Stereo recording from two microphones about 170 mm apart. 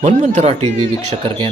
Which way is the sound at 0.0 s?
45° right (ahead or behind).